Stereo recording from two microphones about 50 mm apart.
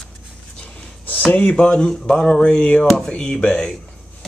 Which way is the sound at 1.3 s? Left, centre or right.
Left.